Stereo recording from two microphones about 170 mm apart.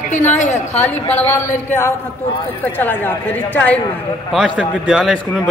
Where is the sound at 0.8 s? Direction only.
10° left (ahead or behind).